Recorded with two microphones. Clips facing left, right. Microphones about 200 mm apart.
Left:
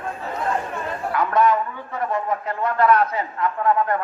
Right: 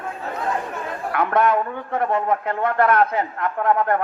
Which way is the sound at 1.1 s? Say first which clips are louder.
Even; 60° right (ahead or behind).